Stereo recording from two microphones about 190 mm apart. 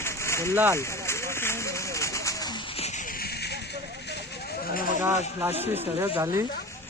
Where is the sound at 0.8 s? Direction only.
15° left (ahead or behind).